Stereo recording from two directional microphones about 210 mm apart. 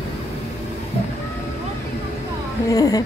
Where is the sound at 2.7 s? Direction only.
15° left (ahead or behind).